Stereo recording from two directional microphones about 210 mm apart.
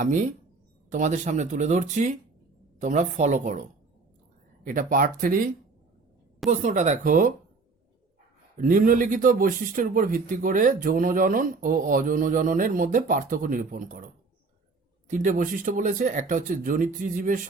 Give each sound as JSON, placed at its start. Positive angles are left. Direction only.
{"t": 0.0, "sound": "speech", "side_deg": -35}
{"t": 4.6, "sound": "speech", "side_deg": -40}
{"t": 6.5, "sound": "speech", "side_deg": -35}
{"t": 8.5, "sound": "speech", "side_deg": -40}
{"t": 15.0, "sound": "speech", "side_deg": -35}